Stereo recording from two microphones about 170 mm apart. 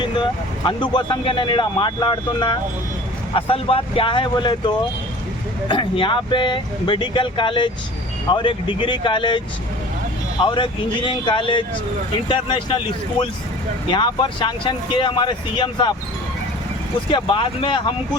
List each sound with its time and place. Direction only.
0.6 s speech: 25° left (ahead or behind)
5.6 s speech: 30° left (ahead or behind)
10.4 s speech: 30° left (ahead or behind)
13.9 s speech: 25° left (ahead or behind)
17.1 s speech: 30° left (ahead or behind)